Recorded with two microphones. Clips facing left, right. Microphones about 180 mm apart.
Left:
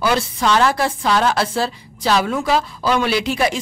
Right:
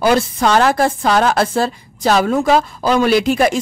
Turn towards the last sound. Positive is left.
turn(degrees=-45)  # may be behind; listen again after turning